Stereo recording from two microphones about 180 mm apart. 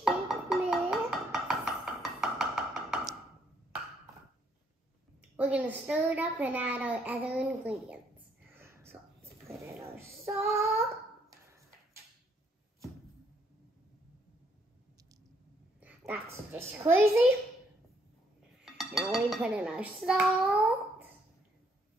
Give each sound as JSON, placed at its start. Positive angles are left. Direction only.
{"t": 0.0, "sound": "music", "side_deg": -5}
{"t": 5.3, "sound": "a child's voice", "side_deg": -10}
{"t": 8.5, "sound": "whispering", "side_deg": -15}
{"t": 9.5, "sound": "child singing", "side_deg": -15}
{"t": 15.8, "sound": "a sound", "side_deg": -10}
{"t": 18.7, "sound": "dishes", "side_deg": 0}